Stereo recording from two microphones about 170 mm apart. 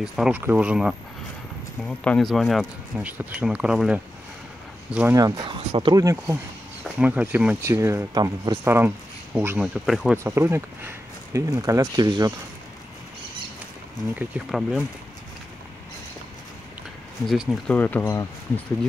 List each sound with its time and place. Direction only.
0.0 s speech: 5° right (ahead or behind)
5.1 s speech: 25° right (ahead or behind)
5.7 s speech: 35° right (ahead or behind)
6.2 s speech: 10° right (ahead or behind)
9.8 s speech: centre (ahead or behind)
10.1 s speech: 15° right (ahead or behind)
14.1 s speech: 5° right (ahead or behind)
17.3 s speech: centre (ahead or behind)